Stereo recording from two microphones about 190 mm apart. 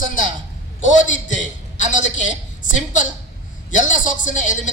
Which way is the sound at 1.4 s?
40° left (ahead or behind).